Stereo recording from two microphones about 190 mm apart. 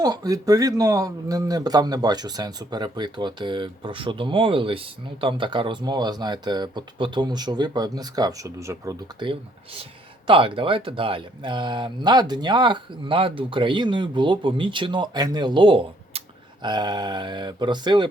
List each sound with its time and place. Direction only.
0.0 s speech: 20° right (ahead or behind)